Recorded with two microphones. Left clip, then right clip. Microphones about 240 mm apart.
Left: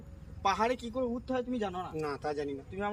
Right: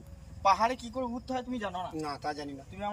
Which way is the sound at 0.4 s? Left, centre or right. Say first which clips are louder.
Right 4 dB; centre.